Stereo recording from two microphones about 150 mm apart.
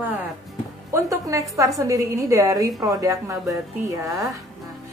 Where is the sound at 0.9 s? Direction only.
20° right (ahead or behind).